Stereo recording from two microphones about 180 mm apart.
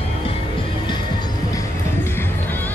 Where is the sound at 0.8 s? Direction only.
25° left (ahead or behind).